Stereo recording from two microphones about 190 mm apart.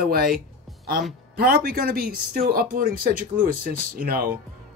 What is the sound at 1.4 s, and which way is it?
Speech, 50° right (ahead or behind).